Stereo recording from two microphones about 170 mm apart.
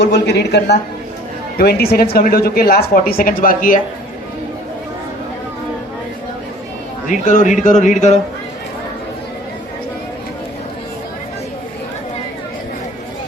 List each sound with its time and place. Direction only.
0.0 s speech: 80° left
1.5 s speech: 65° left (ahead or behind)
7.3 s speech: 45° left (ahead or behind)